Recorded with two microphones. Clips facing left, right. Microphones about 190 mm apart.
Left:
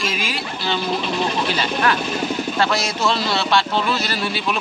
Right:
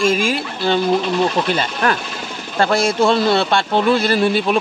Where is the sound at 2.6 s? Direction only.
50° right (ahead or behind).